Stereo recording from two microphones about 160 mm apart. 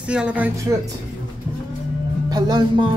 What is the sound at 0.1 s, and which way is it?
Speech, 5° right (ahead or behind).